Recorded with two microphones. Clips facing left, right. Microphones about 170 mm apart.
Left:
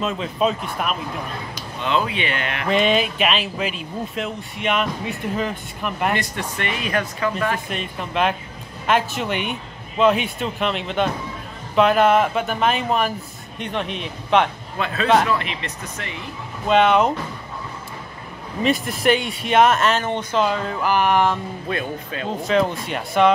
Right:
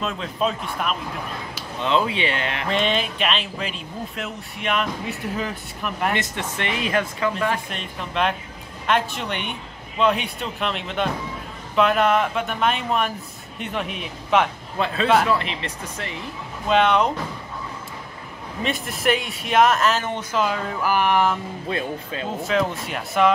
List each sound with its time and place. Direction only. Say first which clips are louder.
0.0 s speech: left 3 dB; 5° left (ahead or behind)
1.8 s speech: right 1 dB; 30° right (ahead or behind)
2.7 s speech: left 5 dB; 5° left (ahead or behind)
6.1 s speech: left 1 dB; 25° right (ahead or behind)
7.7 s speech: left 3 dB; 5° left (ahead or behind)
15.3 s speech: even; 30° right (ahead or behind)
16.6 s speech: left 2 dB; centre (ahead or behind)
18.6 s speech: left 6 dB; centre (ahead or behind)
21.6 s speech: even; 25° right (ahead or behind)
22.4 s speech: left 3 dB; centre (ahead or behind)